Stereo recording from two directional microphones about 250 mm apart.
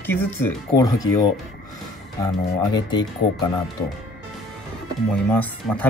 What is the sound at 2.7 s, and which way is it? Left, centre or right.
Speech, centre.